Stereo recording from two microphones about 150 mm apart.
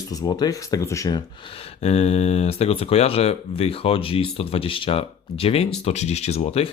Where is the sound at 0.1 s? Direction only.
25° left (ahead or behind).